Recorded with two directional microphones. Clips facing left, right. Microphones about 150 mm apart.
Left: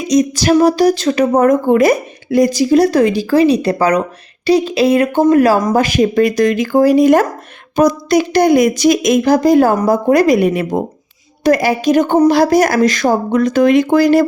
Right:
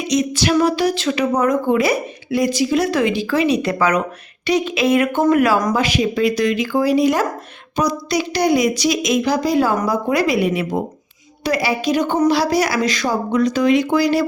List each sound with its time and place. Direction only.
0.1 s a woman's voice: 40° left (ahead or behind)